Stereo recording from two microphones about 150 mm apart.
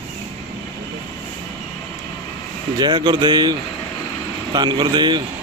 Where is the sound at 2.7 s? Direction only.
30° right (ahead or behind).